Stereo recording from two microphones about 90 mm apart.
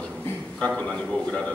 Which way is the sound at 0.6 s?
15° left (ahead or behind).